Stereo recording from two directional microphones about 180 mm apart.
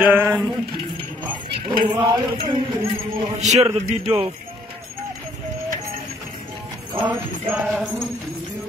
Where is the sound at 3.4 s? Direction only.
40° right (ahead or behind).